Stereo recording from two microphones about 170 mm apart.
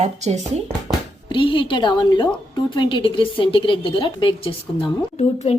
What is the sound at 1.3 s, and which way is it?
A woman's voice, 30° left (ahead or behind).